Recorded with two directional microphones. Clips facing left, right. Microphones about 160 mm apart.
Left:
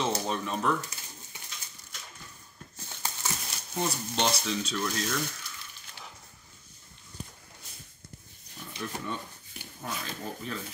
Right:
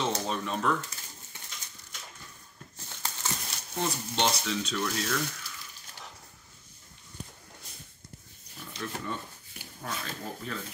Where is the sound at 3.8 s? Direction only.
Centre (ahead or behind).